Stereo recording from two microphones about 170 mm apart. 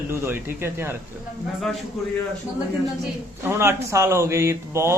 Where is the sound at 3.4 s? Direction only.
15° right (ahead or behind).